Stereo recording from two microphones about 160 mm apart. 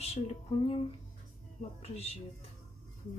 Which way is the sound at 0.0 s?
40° left (ahead or behind).